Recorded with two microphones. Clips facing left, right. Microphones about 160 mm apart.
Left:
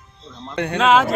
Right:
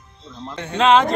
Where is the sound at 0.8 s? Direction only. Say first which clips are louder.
Right 1 dB; 5° left (ahead or behind).